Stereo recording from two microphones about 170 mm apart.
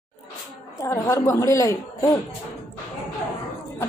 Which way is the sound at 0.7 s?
15° left (ahead or behind).